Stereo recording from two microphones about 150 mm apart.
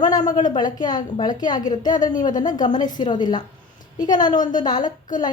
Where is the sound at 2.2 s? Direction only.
60° left (ahead or behind).